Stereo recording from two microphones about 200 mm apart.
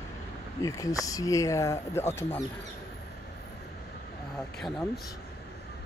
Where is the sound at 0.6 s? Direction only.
15° left (ahead or behind).